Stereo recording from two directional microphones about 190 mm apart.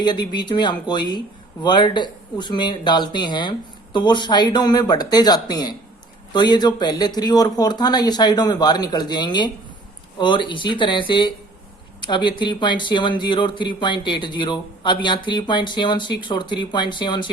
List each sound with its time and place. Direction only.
0.0 s speech: 25° left (ahead or behind)